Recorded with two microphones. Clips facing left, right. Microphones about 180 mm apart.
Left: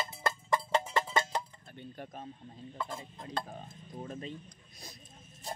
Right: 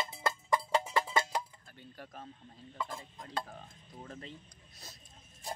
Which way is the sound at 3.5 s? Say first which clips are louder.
Left 5 dB; 20° left (ahead or behind).